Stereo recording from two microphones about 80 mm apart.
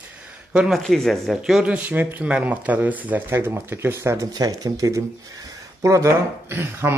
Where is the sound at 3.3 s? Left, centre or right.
Right.